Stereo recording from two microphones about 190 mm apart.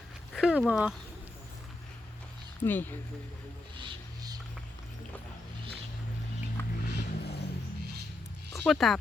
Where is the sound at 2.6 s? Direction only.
10° left (ahead or behind).